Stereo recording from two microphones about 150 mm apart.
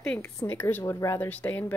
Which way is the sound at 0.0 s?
5° left (ahead or behind).